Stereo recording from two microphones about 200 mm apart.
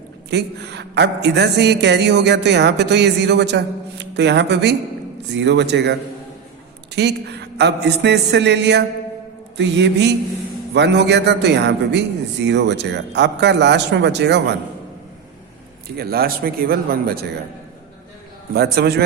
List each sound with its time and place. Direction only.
0.3 s a woman's voice: 55° right (ahead or behind)
16.0 s speech: 50° right (ahead or behind)
18.5 s speech: 55° right (ahead or behind)